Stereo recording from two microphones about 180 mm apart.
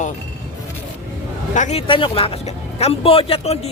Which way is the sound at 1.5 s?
35° left (ahead or behind).